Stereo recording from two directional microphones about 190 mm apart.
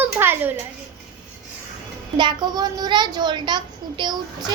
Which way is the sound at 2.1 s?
25° right (ahead or behind).